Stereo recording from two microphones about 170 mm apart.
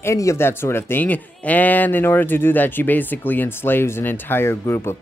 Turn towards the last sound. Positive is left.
turn(degrees=15)  # may be behind; listen again after turning